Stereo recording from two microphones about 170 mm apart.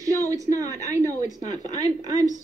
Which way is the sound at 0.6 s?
20° right (ahead or behind).